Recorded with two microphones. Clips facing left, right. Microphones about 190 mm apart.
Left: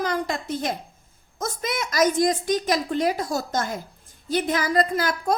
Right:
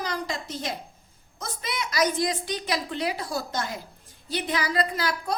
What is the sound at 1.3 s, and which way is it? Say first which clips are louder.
A woman's voice: left 5 dB; 45° left (ahead or behind).